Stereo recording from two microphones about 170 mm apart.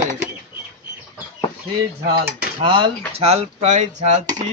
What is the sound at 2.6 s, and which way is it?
Speech, 30° right (ahead or behind).